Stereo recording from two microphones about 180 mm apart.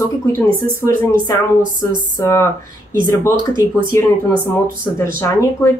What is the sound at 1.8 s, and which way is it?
Speech, 15° left (ahead or behind).